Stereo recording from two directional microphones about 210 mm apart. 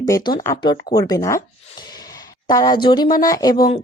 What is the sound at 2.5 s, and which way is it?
Speech, 20° left (ahead or behind).